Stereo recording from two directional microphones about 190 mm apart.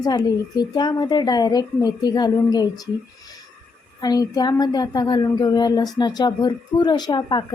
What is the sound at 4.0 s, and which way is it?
A woman's voice, 20° left (ahead or behind).